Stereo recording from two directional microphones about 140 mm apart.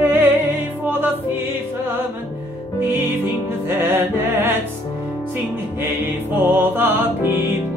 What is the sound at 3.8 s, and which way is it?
Music, 15° right (ahead or behind).